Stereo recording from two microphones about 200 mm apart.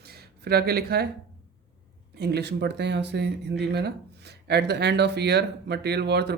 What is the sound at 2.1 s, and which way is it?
Speech, 55° right (ahead or behind).